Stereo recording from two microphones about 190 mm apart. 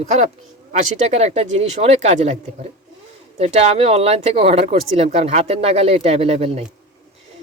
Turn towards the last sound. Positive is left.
turn(degrees=-30)  # may be behind; listen again after turning